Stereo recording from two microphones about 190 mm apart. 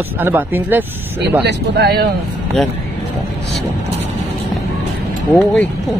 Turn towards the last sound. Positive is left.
turn(degrees=0)  # may be behind; listen again after turning